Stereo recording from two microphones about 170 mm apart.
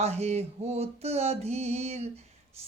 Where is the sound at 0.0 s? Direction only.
40° right (ahead or behind).